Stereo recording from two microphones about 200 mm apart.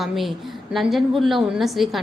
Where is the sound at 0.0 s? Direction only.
Centre (ahead or behind).